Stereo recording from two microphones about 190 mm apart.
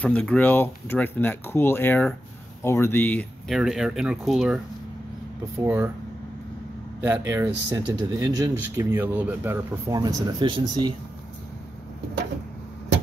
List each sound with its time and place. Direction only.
0.0 s speech: 5° left (ahead or behind)
5.6 s speech: 15° right (ahead or behind)
7.0 s speech: 15° right (ahead or behind)